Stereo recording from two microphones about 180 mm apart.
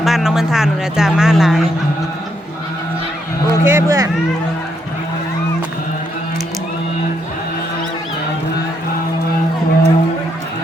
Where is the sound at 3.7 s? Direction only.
15° right (ahead or behind).